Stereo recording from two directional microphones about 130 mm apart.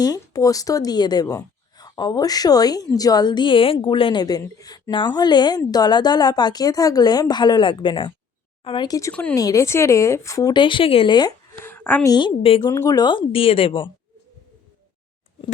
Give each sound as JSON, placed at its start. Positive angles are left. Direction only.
{"t": 0.0, "sound": "a woman's voice", "side_deg": 30}
{"t": 9.3, "sound": "a woman's voice", "side_deg": 25}
{"t": 11.6, "sound": "a sound", "side_deg": 15}
{"t": 12.0, "sound": "a woman's voice", "side_deg": 35}
{"t": 12.6, "sound": "a woman's voice", "side_deg": 25}